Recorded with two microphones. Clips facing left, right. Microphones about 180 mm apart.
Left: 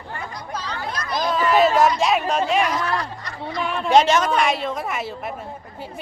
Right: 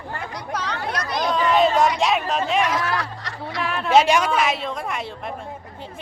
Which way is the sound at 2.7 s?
90° right.